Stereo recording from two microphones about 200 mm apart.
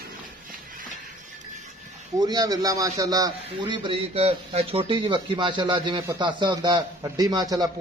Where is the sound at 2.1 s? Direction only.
20° right (ahead or behind).